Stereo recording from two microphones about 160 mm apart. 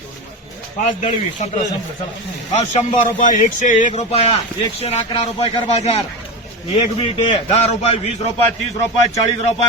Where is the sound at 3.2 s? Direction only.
50° left (ahead or behind).